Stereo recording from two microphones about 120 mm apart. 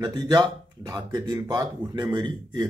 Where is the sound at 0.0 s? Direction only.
35° right (ahead or behind).